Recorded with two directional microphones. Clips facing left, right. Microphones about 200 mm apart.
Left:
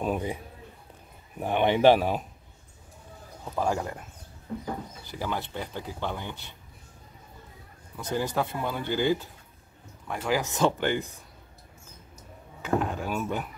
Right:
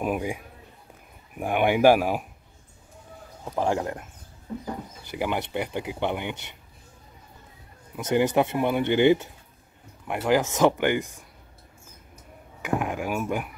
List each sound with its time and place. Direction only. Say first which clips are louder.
0.0 s speech: right 2 dB; 10° right (ahead or behind)
3.4 s speech: right 3 dB; 20° right (ahead or behind)
5.1 s speech: right 5 dB; 15° right (ahead or behind)
8.2 s speech: right 7 dB; 20° right (ahead or behind)
8.8 s speech: right 7 dB; 70° right (ahead or behind)
10.0 s speech: right 5 dB; 15° right (ahead or behind)
12.6 s speech: right 1 dB; 10° right (ahead or behind)